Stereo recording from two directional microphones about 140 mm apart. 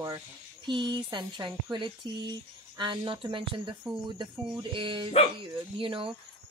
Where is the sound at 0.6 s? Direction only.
35° right (ahead or behind).